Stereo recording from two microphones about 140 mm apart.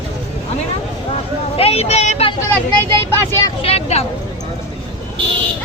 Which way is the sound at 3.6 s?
45° left (ahead or behind).